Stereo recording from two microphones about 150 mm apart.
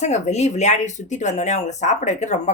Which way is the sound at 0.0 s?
50° left (ahead or behind).